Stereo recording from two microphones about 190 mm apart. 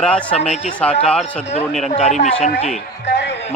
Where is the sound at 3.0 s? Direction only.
65° left (ahead or behind).